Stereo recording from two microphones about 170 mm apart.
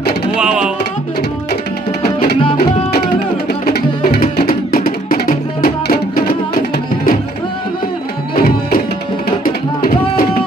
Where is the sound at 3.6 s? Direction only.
60° left (ahead or behind).